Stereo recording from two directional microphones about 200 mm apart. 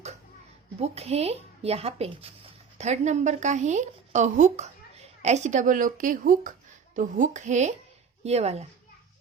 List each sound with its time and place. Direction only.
0.8 s a woman's voice: 30° right (ahead or behind)